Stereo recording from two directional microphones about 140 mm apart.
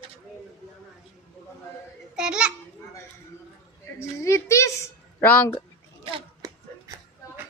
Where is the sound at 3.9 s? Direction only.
20° left (ahead or behind).